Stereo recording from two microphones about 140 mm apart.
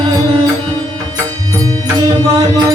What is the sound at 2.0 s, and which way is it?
Music, 25° right (ahead or behind).